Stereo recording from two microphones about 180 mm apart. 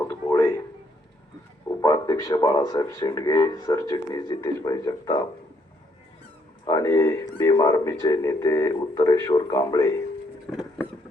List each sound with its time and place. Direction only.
0.1 s a sound: 20° left (ahead or behind)
1.6 s speech: 20° left (ahead or behind)
6.7 s speech: 20° left (ahead or behind)